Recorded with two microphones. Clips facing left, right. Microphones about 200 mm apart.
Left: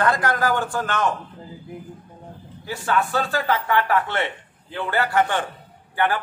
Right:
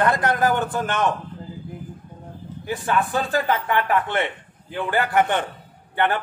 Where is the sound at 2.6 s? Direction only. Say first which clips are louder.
Even; 20° right (ahead or behind).